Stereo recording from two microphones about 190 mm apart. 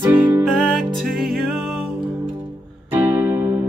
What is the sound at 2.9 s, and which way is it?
Music, 15° right (ahead or behind).